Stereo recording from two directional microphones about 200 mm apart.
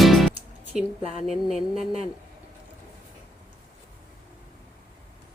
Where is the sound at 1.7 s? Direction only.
30° right (ahead or behind).